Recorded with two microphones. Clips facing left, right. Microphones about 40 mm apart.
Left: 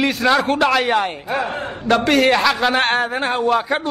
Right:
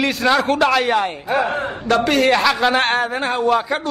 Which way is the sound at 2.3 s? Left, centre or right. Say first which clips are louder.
Right 1 dB; centre.